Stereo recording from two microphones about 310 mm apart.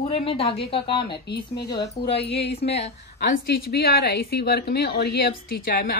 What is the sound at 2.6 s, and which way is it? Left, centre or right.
Speech, centre.